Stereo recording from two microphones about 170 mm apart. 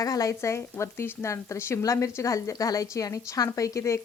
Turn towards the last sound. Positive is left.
turn(degrees=20)  # may be behind; listen again after turning